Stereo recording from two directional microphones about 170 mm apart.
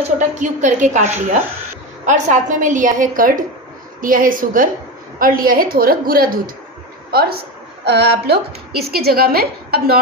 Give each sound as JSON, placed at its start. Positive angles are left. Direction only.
{"t": 0.4, "sound": "a woman's voice", "side_deg": -45}
{"t": 7.8, "sound": "a woman's voice", "side_deg": -75}